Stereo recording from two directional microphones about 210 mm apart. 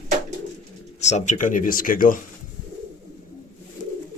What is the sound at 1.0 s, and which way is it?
Speech, 30° left (ahead or behind).